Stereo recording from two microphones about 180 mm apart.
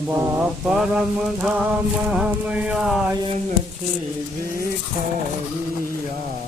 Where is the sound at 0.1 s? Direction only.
15° right (ahead or behind).